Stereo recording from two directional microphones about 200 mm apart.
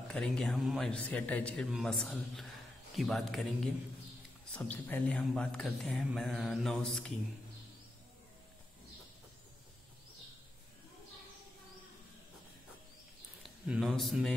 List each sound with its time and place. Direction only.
0.1 s speech: 5° left (ahead or behind)
4.5 s speech: 5° left (ahead or behind)
13.4 s a man's voice: centre (ahead or behind)